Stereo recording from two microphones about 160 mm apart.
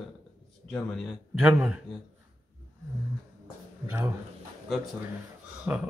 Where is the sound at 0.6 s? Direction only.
5° left (ahead or behind).